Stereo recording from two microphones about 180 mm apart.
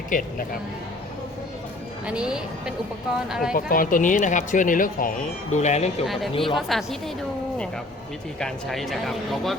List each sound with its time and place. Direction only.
0.1 s speech: 45° left (ahead or behind)
2.0 s speech: 5° right (ahead or behind)
3.5 s speech: 50° left (ahead or behind); by 6.6 s 30° left (ahead or behind)
6.6 s speech: centre (ahead or behind)
8.4 s speech: centre (ahead or behind)